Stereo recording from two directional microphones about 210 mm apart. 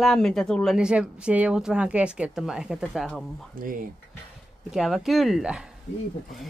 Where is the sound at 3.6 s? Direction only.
40° right (ahead or behind).